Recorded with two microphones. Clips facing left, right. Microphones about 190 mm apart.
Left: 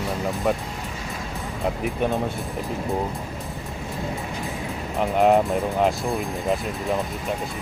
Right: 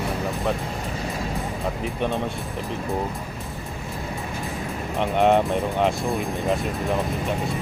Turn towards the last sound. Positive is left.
turn(degrees=5)  # may be behind; listen again after turning